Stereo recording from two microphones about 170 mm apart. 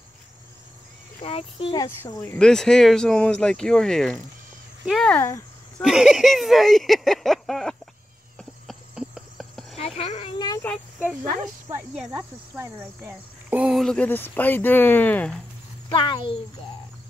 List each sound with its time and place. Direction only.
1.2 s speech: 35° left (ahead or behind)
1.8 s speech: 20° left (ahead or behind)
2.3 s speech: 5° left (ahead or behind)
4.8 s cricket: 5° left (ahead or behind)
5.8 s speech: centre (ahead or behind)
8.4 s cricket: centre (ahead or behind)
9.8 s a sound: 35° left (ahead or behind)
12.1 s cricket: 20° right (ahead or behind); by 15.4 s 5° left (ahead or behind)
15.9 s speech: 30° left (ahead or behind)